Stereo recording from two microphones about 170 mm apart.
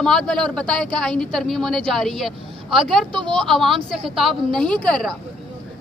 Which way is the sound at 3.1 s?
30° right (ahead or behind).